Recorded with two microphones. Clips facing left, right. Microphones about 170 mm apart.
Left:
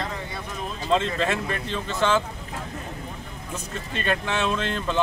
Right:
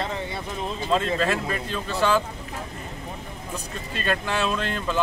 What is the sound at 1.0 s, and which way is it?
Speech, 25° left (ahead or behind).